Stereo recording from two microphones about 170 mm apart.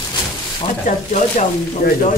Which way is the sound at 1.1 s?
45° left (ahead or behind).